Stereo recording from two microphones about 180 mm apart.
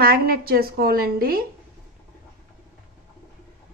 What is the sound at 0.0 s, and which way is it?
A woman's voice, 55° right (ahead or behind).